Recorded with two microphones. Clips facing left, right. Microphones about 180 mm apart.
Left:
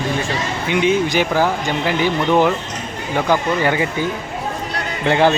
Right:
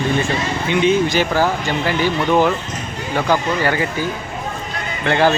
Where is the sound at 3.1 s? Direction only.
15° left (ahead or behind).